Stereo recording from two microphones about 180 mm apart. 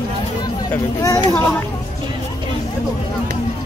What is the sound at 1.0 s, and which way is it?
Children playing, 20° left (ahead or behind).